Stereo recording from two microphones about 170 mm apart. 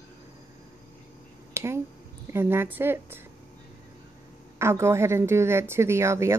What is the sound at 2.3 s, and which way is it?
Speech, 15° right (ahead or behind).